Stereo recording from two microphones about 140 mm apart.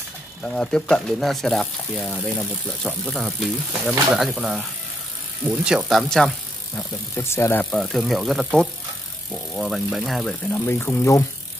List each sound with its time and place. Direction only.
0.4 s speech: 5° left (ahead or behind)
7.2 s speech: 20° left (ahead or behind)
7.7 s speech: centre (ahead or behind)
10.5 s speech: 15° left (ahead or behind)